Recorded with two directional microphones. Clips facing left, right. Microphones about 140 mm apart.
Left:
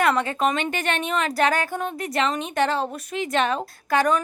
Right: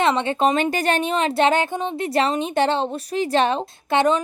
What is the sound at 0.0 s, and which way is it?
A woman's voice, 25° right (ahead or behind).